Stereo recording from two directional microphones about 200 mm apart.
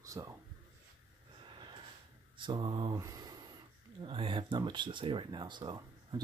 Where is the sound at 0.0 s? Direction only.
15° right (ahead or behind).